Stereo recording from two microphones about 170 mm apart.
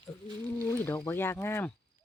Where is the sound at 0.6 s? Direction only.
15° left (ahead or behind).